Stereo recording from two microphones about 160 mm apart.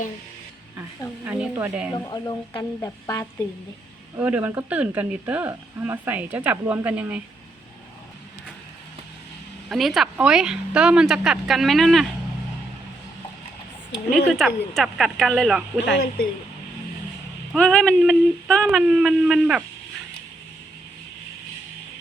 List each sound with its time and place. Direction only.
1.2 s speech: 10° right (ahead or behind)
2.0 s speech: 25° left (ahead or behind)
4.2 s speech: 10° right (ahead or behind)
9.6 s speech: centre (ahead or behind)
14.3 s speech: centre (ahead or behind)
17.5 s speech: 5° left (ahead or behind)